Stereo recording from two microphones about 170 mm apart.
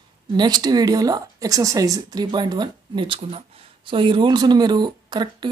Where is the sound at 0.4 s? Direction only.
25° right (ahead or behind).